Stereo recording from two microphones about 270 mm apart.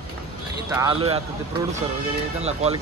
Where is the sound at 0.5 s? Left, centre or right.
Centre.